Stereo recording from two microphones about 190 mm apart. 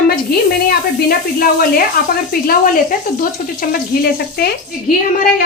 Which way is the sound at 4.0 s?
55° left (ahead or behind).